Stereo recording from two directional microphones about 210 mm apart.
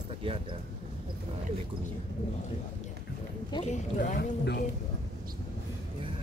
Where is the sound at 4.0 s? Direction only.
50° left (ahead or behind).